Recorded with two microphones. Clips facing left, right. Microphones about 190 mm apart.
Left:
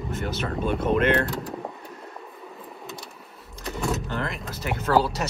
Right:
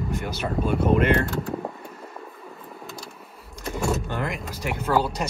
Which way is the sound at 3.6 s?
Centre (ahead or behind).